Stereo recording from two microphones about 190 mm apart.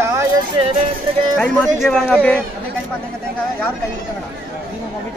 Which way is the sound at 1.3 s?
Centre (ahead or behind).